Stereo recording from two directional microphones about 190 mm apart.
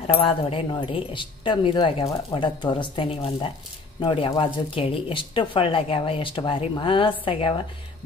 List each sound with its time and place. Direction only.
0.0 s speech: 30° left (ahead or behind)